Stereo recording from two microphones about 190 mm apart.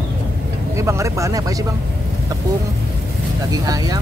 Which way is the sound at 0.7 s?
15° right (ahead or behind).